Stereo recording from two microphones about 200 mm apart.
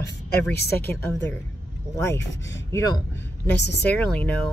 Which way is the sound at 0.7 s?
10° left (ahead or behind).